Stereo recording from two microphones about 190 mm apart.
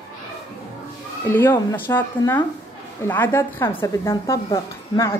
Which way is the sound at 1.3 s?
10° left (ahead or behind).